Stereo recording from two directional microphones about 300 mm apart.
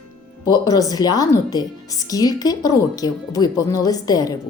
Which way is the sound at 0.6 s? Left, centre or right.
Centre.